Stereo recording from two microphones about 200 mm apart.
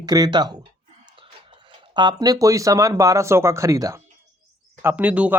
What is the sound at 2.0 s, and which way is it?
Speech, 20° right (ahead or behind).